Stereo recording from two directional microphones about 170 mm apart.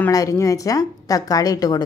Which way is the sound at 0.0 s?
20° left (ahead or behind).